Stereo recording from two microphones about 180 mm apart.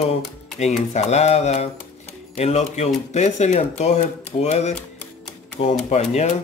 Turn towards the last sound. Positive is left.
turn(degrees=40)  # may be behind; listen again after turning